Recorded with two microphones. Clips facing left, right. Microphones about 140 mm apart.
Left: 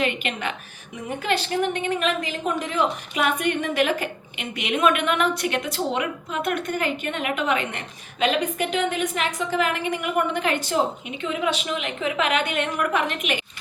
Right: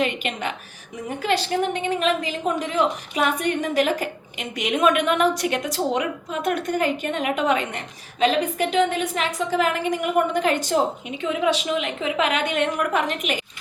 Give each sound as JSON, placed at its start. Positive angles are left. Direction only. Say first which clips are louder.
{"t": 0.0, "sound": "a woman's voice", "louder": "right 1 dB", "side_deg": -35}